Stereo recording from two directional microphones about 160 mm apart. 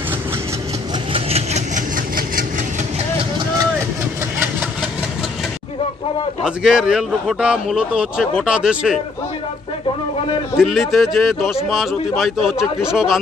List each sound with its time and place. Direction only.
1.1 s vehicle: 40° right (ahead or behind)
6.4 s a man's voice: 5° right (ahead or behind)
10.6 s a man's voice: centre (ahead or behind)